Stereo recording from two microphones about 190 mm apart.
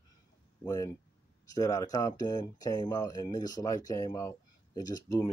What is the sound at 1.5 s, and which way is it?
Speech, 20° left (ahead or behind).